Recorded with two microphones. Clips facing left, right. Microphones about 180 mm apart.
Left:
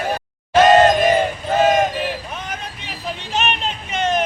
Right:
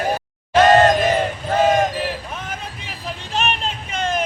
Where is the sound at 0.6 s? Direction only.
10° left (ahead or behind).